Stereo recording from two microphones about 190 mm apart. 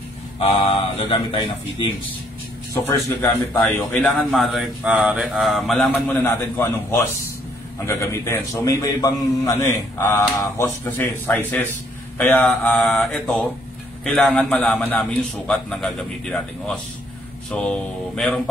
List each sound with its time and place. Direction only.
0.4 s speech: 30° left (ahead or behind)
2.7 s a man's voice: 15° left (ahead or behind)
6.2 s a man's voice: 10° left (ahead or behind)